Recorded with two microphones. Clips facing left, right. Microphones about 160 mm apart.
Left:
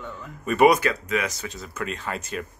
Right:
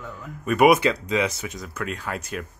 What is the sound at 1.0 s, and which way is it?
Speech, 25° right (ahead or behind).